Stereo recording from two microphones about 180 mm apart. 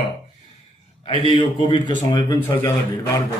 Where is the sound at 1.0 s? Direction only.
30° left (ahead or behind).